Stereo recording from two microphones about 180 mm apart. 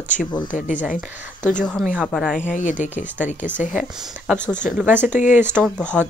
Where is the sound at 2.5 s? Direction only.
45° left (ahead or behind).